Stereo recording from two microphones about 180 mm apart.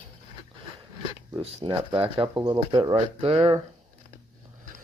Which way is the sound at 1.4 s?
30° right (ahead or behind).